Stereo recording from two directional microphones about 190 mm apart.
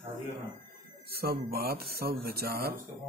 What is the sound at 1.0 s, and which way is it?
Speech, 55° right (ahead or behind).